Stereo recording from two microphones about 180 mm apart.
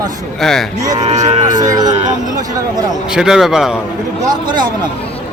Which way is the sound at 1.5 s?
20° right (ahead or behind).